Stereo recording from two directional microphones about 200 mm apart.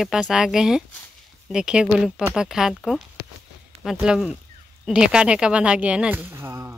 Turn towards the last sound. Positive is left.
turn(degrees=-15)  # may be behind; listen again after turning